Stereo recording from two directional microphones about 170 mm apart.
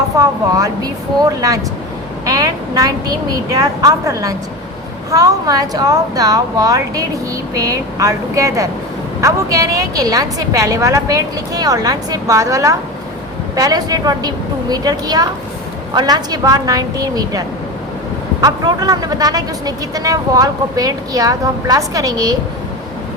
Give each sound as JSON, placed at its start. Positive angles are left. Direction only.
{"t": 0.2, "sound": "speech", "side_deg": -20}